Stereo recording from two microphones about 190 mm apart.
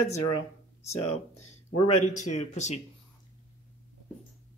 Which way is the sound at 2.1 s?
40° left (ahead or behind).